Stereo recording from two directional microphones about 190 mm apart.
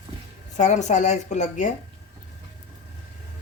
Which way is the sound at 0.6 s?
40° left (ahead or behind).